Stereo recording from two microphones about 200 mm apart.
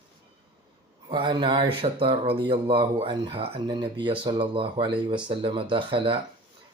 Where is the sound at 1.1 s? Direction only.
25° right (ahead or behind).